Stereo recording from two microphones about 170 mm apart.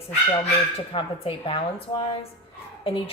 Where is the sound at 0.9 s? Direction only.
30° left (ahead or behind).